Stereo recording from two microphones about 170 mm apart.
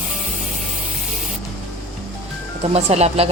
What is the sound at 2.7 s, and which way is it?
Speech, 40° right (ahead or behind).